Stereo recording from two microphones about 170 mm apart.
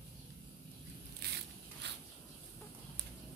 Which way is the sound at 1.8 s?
90° right.